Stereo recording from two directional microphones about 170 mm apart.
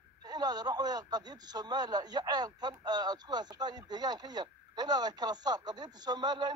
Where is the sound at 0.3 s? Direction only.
25° right (ahead or behind).